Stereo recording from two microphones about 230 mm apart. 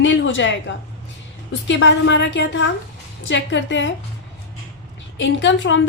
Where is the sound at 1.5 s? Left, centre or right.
Left.